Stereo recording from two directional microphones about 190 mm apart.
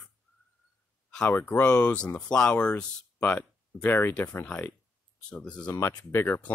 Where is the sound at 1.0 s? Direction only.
5° left (ahead or behind).